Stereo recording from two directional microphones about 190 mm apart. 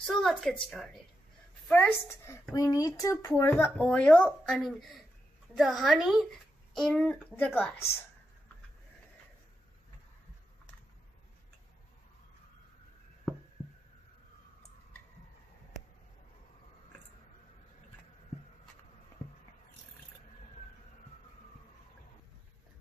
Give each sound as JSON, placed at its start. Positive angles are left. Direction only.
{"t": 0.0, "sound": "speech", "side_deg": 0}
{"t": 1.7, "sound": "a woman's voice", "side_deg": 10}